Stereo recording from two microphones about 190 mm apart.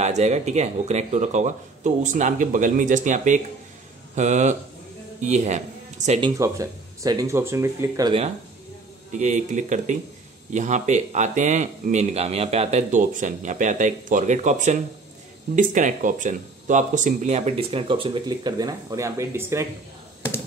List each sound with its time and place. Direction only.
0.0 s speech: 35° right (ahead or behind)
6.3 s speech: 15° right (ahead or behind)
9.2 s speech: 40° right (ahead or behind); by 19.7 s 15° right (ahead or behind)